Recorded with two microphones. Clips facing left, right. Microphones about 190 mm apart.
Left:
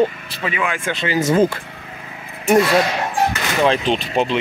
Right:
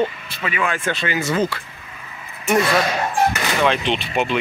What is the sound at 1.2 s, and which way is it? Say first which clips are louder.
Speech: left 8 dB; 45° left (ahead or behind).